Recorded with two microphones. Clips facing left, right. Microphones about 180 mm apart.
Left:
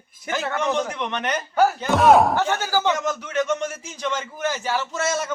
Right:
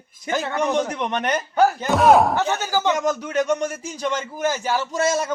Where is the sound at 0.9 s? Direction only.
40° right (ahead or behind).